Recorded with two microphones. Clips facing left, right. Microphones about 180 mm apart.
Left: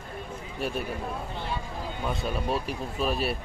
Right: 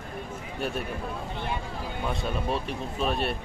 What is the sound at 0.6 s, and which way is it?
Speech, centre (ahead or behind).